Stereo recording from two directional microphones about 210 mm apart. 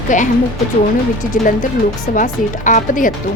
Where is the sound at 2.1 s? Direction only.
40° left (ahead or behind).